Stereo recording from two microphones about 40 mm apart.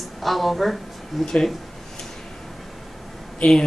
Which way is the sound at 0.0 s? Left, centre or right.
Centre.